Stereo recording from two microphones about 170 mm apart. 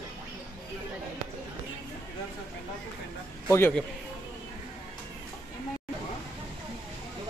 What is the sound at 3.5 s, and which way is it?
Speech, 15° left (ahead or behind).